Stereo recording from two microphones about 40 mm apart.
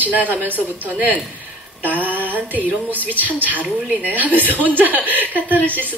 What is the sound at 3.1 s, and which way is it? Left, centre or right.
A woman's voice, right.